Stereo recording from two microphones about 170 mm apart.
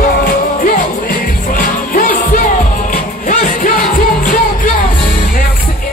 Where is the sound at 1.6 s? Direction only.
55° left (ahead or behind).